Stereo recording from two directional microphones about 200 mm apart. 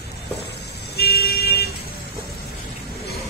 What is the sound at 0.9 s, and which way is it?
Vehicle, 50° left (ahead or behind).